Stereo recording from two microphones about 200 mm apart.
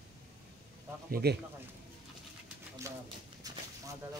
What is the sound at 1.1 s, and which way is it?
Speech, 50° right (ahead or behind).